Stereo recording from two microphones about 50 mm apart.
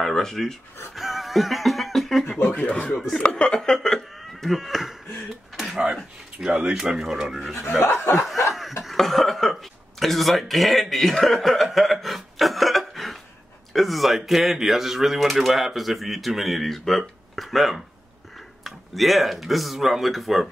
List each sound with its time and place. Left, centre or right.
0.0 s speech: centre
2.7 s speech: left; by 4.9 s centre
5.6 s a sound: centre
6.7 s speech: centre
7.8 s chuckle: left
8.9 s speech: centre